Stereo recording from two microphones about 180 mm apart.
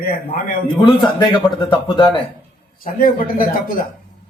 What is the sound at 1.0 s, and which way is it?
Speech, 25° left (ahead or behind).